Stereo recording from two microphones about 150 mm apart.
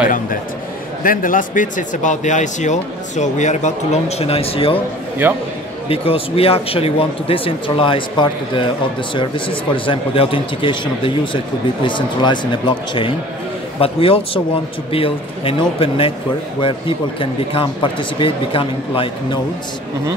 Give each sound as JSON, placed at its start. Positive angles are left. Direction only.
{"t": 1.0, "sound": "a man's voice", "side_deg": 65}
{"t": 5.2, "sound": "speech", "side_deg": -15}
{"t": 5.9, "sound": "speech", "side_deg": 40}
{"t": 11.8, "sound": "speech", "side_deg": 30}